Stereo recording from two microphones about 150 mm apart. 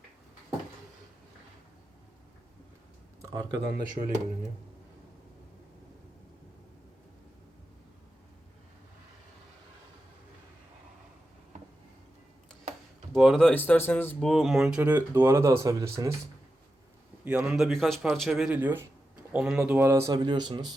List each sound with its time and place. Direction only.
3.2 s a sound: 25° right (ahead or behind)
3.6 s speech: 90° right
13.1 s speech: centre (ahead or behind); by 16.1 s 20° right (ahead or behind)
17.2 s speech: 5° right (ahead or behind); by 20.7 s 30° right (ahead or behind)